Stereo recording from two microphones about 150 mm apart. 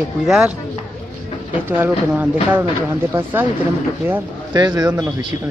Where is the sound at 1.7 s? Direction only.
10° right (ahead or behind).